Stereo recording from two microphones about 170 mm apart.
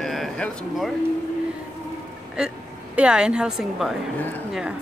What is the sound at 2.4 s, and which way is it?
Speech, 5° right (ahead or behind).